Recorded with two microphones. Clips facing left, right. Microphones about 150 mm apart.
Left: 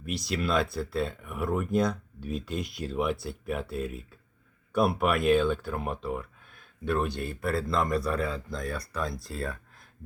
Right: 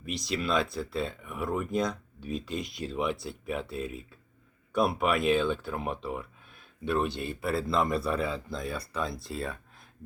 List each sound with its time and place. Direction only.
0.0 s speech: centre (ahead or behind)
6.8 s speech: 15° right (ahead or behind)
7.3 s speech: 5° right (ahead or behind)